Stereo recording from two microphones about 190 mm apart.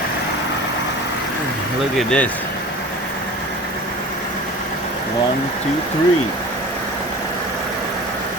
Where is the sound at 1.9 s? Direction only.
5° left (ahead or behind).